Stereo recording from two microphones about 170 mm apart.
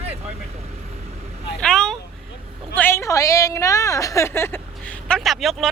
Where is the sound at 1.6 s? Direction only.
5° left (ahead or behind).